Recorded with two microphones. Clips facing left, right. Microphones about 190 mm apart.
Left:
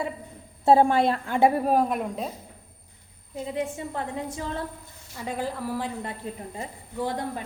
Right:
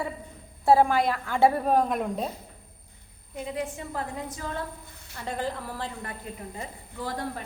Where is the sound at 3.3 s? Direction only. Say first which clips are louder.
Left 2 dB; 30° left (ahead or behind).